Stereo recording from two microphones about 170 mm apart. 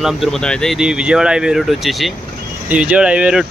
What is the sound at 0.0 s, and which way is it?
Speech, centre (ahead or behind).